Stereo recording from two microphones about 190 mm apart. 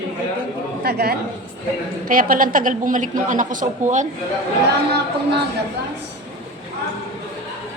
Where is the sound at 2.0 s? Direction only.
45° right (ahead or behind).